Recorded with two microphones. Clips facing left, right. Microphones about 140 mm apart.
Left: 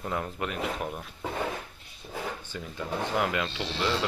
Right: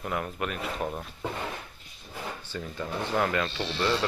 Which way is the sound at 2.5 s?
10° left (ahead or behind).